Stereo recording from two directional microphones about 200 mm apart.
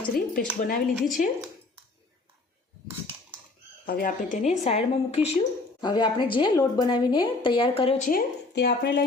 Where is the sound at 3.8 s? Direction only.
40° left (ahead or behind).